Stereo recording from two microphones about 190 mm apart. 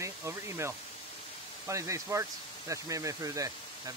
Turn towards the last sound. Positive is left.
turn(degrees=-15)  # may be behind; listen again after turning